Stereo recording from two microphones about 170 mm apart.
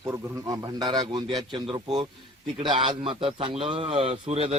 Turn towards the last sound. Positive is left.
turn(degrees=-40)  # may be behind; listen again after turning